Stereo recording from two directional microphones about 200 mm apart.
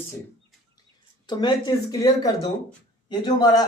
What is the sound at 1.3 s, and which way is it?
A woman's voice, 20° left (ahead or behind).